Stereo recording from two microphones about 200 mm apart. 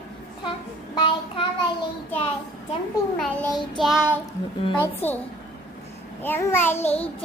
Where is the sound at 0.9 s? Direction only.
25° left (ahead or behind).